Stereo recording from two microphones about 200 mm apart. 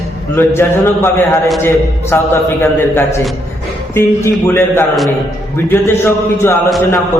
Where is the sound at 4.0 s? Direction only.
10° left (ahead or behind).